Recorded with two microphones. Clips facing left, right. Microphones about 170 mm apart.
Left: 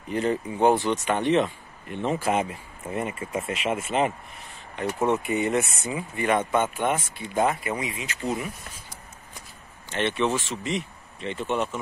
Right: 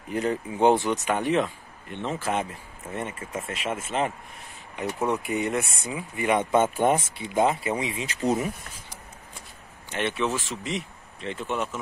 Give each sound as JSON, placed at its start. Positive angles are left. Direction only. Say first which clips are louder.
{"t": 0.1, "sound": "speech", "louder": "left 1 dB", "side_deg": -5}
{"t": 0.6, "sound": "speech", "louder": "right 1 dB", "side_deg": -15}
{"t": 1.0, "sound": "speech", "louder": "left 2 dB", "side_deg": -5}
{"t": 2.0, "sound": "speech", "louder": "left 3 dB", "side_deg": 15}
{"t": 6.2, "sound": "speech", "louder": "right 1 dB", "side_deg": -20}
{"t": 6.6, "sound": "speech", "louder": "right 3 dB", "side_deg": -35}
{"t": 7.2, "sound": "speech", "louder": "right 1 dB", "side_deg": -20}
{"t": 9.8, "sound": "speech", "louder": "left 2 dB", "side_deg": -10}